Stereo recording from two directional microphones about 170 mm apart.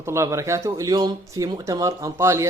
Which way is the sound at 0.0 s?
15° right (ahead or behind).